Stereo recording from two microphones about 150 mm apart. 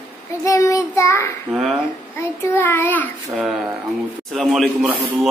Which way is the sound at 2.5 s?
15° left (ahead or behind).